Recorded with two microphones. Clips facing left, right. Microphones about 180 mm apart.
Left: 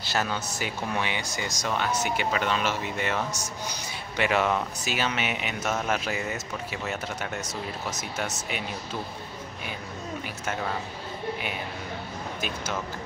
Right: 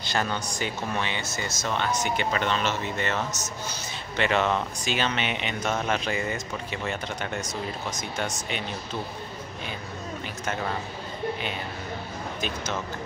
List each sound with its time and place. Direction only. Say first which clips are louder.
0.0 s speech: right 1 dB; 5° left (ahead or behind)
10.4 s speech: right 1 dB; 5° left (ahead or behind)
12.4 s speech: right 1 dB; 10° left (ahead or behind)